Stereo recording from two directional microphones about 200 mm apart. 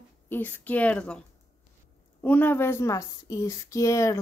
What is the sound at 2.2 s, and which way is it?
Speech, 10° left (ahead or behind).